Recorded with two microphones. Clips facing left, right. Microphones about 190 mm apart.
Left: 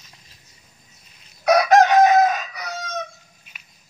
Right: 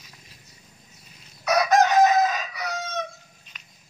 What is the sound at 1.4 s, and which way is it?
Chicken, 65° left (ahead or behind).